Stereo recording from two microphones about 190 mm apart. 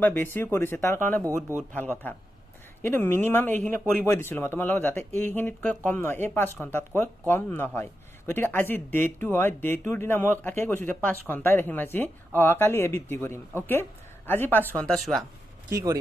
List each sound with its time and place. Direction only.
0.0 s speech: 10° left (ahead or behind)
15.7 s speech: 20° right (ahead or behind)